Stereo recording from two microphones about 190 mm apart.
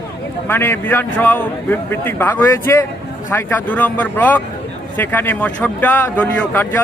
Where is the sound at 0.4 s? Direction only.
10° left (ahead or behind).